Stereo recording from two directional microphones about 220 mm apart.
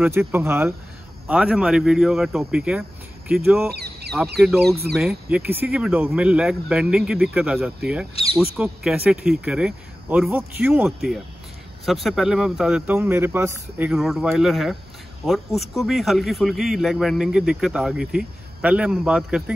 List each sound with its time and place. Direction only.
0.0 s a man's voice: 10° right (ahead or behind)
3.7 s duck: 45° right (ahead or behind)
4.9 s a man's voice: 5° right (ahead or behind)